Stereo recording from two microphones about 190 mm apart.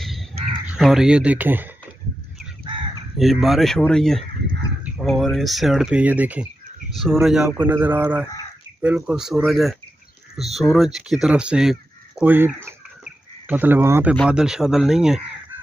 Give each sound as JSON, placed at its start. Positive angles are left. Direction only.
{"t": 0.0, "sound": "crow", "side_deg": 0}
{"t": 0.7, "sound": "speech", "side_deg": -5}
{"t": 3.2, "sound": "speech", "side_deg": 0}
{"t": 12.6, "sound": "chicken", "side_deg": -10}
{"t": 14.1, "sound": "speech", "side_deg": -5}